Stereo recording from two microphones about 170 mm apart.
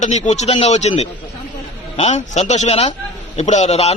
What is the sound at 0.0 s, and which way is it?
A man's voice, 45° left (ahead or behind).